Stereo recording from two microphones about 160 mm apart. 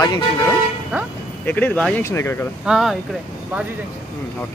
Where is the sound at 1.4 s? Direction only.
10° left (ahead or behind).